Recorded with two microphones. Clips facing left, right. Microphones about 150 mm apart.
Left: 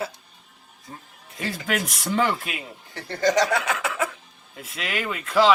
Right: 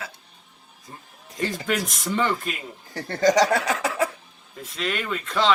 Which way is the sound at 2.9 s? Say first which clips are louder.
Right 2 dB; 40° right (ahead or behind).